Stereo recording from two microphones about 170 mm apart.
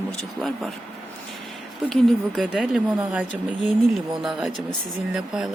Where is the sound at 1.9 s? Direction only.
Centre (ahead or behind).